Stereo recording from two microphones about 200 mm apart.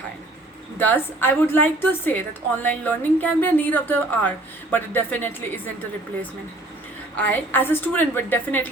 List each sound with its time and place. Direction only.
0.8 s a woman's voice: 10° left (ahead or behind)
7.2 s a woman's voice: 10° left (ahead or behind)